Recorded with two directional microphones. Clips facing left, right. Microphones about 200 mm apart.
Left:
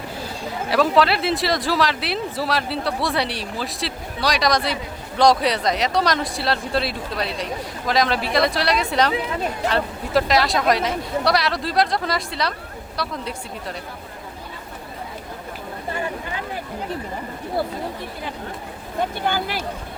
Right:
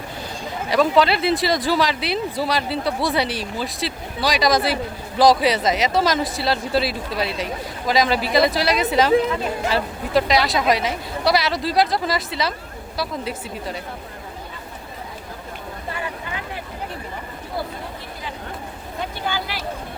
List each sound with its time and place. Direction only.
0.7 s speech: centre (ahead or behind)
19.2 s speech: 50° left (ahead or behind)